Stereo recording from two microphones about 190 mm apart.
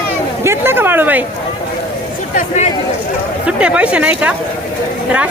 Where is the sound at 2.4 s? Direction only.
35° left (ahead or behind).